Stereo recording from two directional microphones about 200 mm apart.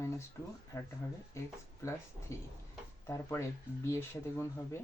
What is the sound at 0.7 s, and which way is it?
Speech, 15° left (ahead or behind).